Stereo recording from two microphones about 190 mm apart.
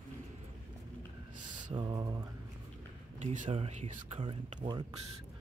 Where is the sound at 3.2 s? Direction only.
40° right (ahead or behind).